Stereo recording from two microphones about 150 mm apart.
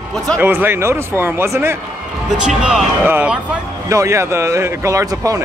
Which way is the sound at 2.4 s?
5° right (ahead or behind).